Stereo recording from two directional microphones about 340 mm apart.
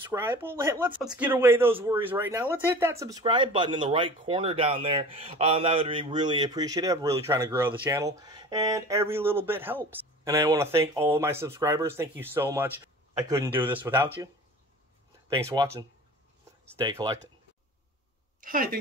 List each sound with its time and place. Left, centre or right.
0.1 s speech: centre
16.8 s speech: centre
18.4 s speech: right